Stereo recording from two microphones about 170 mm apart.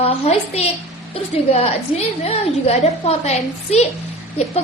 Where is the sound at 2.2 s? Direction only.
35° left (ahead or behind).